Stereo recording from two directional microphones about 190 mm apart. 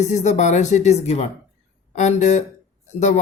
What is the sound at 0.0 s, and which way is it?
Speech, 40° left (ahead or behind).